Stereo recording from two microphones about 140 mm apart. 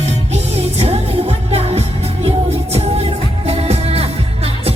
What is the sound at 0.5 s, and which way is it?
Music, 50° right (ahead or behind).